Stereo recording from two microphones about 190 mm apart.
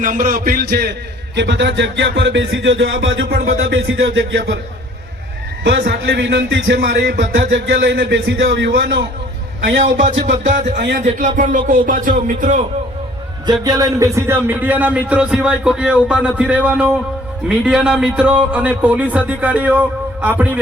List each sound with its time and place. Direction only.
0.0 s speech: 45° right (ahead or behind)
1.4 s music: 65° right (ahead or behind)
5.6 s a man's voice: 60° right (ahead or behind)
10.4 s speech: 40° right (ahead or behind)
10.8 s a man's voice: 65° right (ahead or behind)
11.0 s speech: 45° right (ahead or behind)
13.5 s speech: 20° right (ahead or behind)